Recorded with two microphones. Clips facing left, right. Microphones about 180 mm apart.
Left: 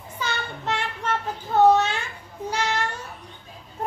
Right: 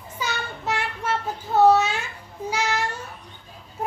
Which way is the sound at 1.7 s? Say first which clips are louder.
Even; 10° right (ahead or behind).